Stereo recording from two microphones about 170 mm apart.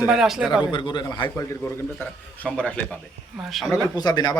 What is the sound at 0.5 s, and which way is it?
Speech, 30° left (ahead or behind).